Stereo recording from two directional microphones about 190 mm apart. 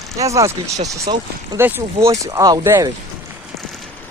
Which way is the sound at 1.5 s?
10° right (ahead or behind).